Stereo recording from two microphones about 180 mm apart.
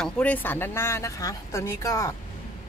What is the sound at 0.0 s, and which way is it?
Speech, 10° left (ahead or behind).